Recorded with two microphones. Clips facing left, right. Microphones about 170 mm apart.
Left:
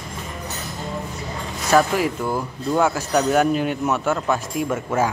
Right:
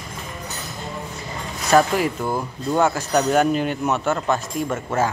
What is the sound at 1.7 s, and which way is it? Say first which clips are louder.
Speech: right 1 dB; centre (ahead or behind).